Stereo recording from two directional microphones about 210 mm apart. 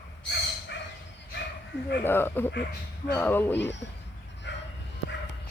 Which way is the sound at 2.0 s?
10° left (ahead or behind).